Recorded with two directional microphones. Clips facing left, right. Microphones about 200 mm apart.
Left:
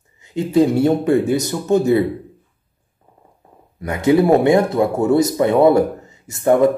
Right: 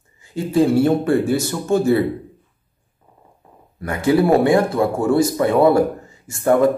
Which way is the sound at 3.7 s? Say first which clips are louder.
Left 2 dB; 20° left (ahead or behind).